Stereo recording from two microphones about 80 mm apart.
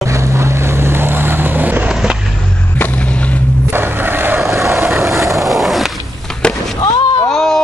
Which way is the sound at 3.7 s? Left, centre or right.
Right.